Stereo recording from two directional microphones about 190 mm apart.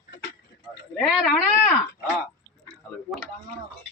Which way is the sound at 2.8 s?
10° left (ahead or behind).